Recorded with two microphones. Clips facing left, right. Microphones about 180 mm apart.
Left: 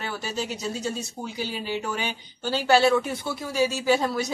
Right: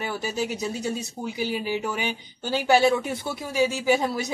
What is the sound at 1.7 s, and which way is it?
Speech, 15° right (ahead or behind).